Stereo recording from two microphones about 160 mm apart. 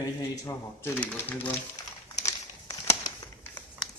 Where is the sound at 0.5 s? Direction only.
15° left (ahead or behind).